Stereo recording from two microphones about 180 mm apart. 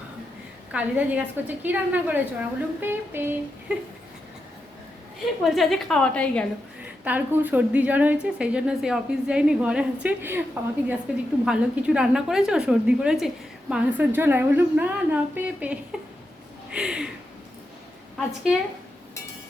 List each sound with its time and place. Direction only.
0.7 s a woman's voice: 10° right (ahead or behind)
5.4 s a woman's voice: centre (ahead or behind)
7.0 s a woman's voice: 10° right (ahead or behind)